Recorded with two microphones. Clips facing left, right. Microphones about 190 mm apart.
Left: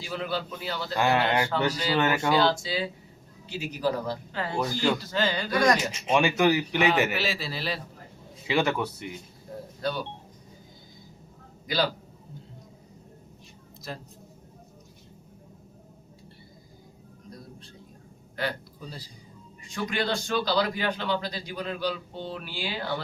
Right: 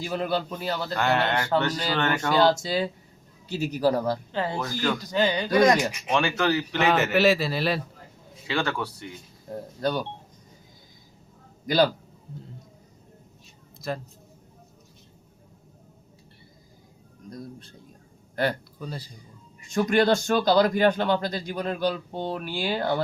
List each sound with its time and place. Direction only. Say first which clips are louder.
0.0 s a man's voice: right 4 dB; 50° right (ahead or behind)
0.9 s speech: left 2 dB; 10° left (ahead or behind)
2.4 s a man's voice: right 4 dB; 45° right (ahead or behind)
4.3 s speech: right 5 dB; 25° right (ahead or behind)
4.5 s speech: left 6 dB; 20° left (ahead or behind)
4.9 s speech: right 3 dB; 15° right (ahead or behind)
5.9 s speech: left 1 dB; 20° left (ahead or behind)
7.2 s a man's voice: right 10 dB; 55° right (ahead or behind)
8.4 s speech: left 2 dB; 20° left (ahead or behind)
11.6 s a man's voice: right 6 dB; 45° right (ahead or behind)
13.9 s a man's voice: right 7 dB; 55° right (ahead or behind)
18.3 s a man's voice: right 5 dB; 55° right (ahead or behind)